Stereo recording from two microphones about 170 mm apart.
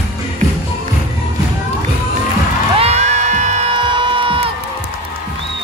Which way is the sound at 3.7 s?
30° right (ahead or behind).